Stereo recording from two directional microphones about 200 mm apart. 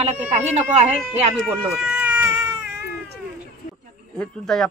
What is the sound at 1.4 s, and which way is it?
Baby cry, 5° right (ahead or behind).